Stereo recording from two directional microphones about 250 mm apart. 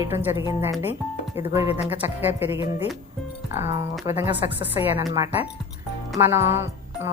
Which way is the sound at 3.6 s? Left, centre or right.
Centre.